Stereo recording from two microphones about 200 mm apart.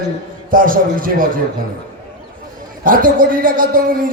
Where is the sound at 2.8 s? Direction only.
45° right (ahead or behind).